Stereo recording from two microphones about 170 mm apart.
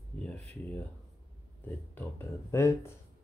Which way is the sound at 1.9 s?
15° left (ahead or behind).